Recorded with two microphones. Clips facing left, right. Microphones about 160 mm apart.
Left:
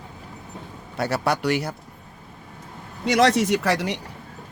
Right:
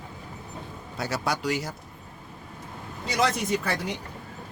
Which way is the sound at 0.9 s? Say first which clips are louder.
Left 6 dB; 60° left (ahead or behind).